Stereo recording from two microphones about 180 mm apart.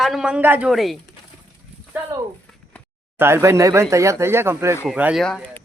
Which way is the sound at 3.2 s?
15° right (ahead or behind).